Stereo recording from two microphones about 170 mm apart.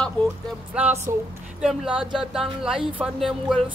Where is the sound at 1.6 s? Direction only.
5° right (ahead or behind).